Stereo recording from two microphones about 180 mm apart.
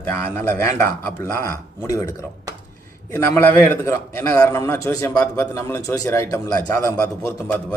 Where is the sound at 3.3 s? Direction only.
15° left (ahead or behind).